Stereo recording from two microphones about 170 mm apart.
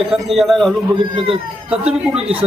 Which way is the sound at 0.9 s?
30° right (ahead or behind).